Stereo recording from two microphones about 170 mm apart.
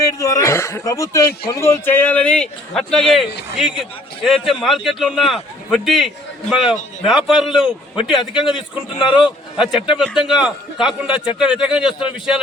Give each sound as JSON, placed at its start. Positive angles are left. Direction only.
{"t": 0.0, "sound": "a man's voice", "side_deg": 20}
{"t": 8.5, "sound": "speech", "side_deg": 30}
{"t": 9.2, "sound": "a man's voice", "side_deg": -5}